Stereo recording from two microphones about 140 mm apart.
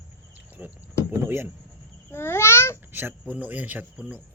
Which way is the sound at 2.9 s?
15° right (ahead or behind).